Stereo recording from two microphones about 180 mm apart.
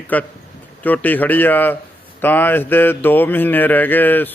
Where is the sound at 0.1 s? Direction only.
10° left (ahead or behind).